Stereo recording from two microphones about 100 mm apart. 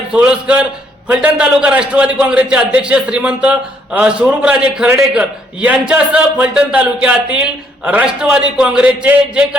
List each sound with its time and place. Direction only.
0.1 s a man's voice: 10° right (ahead or behind)